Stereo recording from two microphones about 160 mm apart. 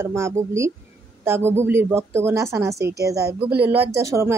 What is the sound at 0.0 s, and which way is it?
Speech, 15° right (ahead or behind).